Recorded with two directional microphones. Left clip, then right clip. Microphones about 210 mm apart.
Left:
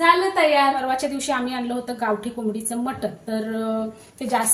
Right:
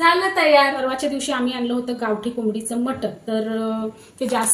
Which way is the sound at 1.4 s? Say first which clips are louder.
Right 3 dB; 15° left (ahead or behind).